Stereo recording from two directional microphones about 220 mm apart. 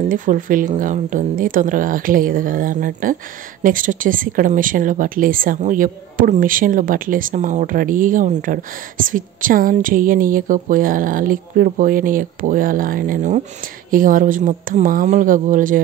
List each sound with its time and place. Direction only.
0.1 s speech: 35° right (ahead or behind)